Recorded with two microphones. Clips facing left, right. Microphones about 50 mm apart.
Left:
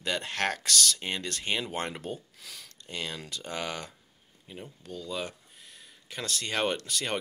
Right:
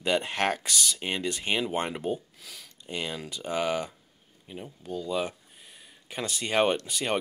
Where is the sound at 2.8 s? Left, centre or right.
Centre.